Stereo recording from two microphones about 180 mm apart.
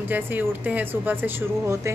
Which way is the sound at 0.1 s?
10° right (ahead or behind).